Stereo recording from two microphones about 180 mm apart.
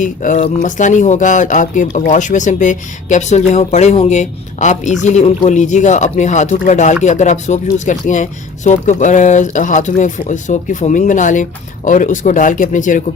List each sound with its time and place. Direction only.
0.0 s speech: 45° left (ahead or behind)